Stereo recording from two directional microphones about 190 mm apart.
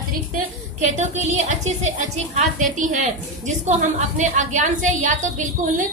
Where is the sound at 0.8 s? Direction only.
40° right (ahead or behind).